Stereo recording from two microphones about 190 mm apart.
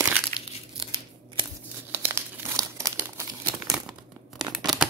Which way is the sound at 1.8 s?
10° right (ahead or behind).